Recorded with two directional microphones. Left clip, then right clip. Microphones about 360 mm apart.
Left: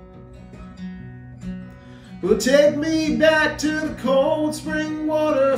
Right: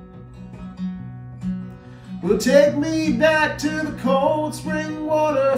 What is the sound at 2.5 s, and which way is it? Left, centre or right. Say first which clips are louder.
Male singing: right 1 dB; centre.